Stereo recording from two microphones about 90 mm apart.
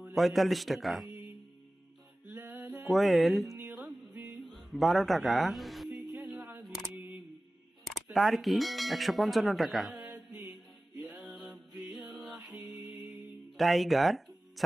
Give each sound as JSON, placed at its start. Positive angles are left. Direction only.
{"t": 0.1, "sound": "a man's voice", "side_deg": 0}
{"t": 2.2, "sound": "a sound", "side_deg": -20}
{"t": 2.9, "sound": "a man's voice", "side_deg": 0}
{"t": 3.8, "sound": "music", "side_deg": -15}
{"t": 4.4, "sound": "music", "side_deg": 0}
{"t": 5.9, "sound": "music", "side_deg": -10}
{"t": 7.8, "sound": "speech", "side_deg": 0}
{"t": 10.1, "sound": "music", "side_deg": -10}
{"t": 13.6, "sound": "a man's voice", "side_deg": 0}